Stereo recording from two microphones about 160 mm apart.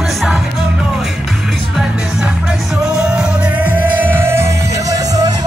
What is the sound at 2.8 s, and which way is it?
Music, 5° right (ahead or behind).